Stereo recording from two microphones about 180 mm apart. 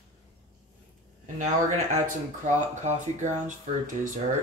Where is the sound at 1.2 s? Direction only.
40° right (ahead or behind).